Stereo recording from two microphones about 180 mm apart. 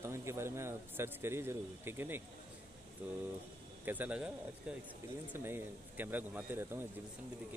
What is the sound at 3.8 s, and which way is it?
Speech, 10° right (ahead or behind).